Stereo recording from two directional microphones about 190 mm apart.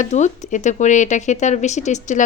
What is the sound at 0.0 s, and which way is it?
Speech, 40° left (ahead or behind).